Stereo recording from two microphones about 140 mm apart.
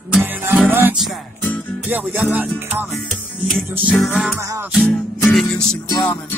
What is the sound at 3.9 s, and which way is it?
Music, centre (ahead or behind).